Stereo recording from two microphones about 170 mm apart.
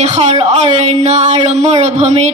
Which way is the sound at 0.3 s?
45° right (ahead or behind).